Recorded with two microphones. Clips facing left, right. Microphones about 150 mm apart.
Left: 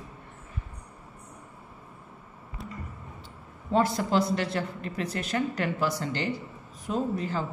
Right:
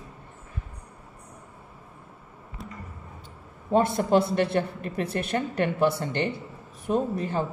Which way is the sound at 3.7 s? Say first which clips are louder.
Right 3 dB; 25° right (ahead or behind).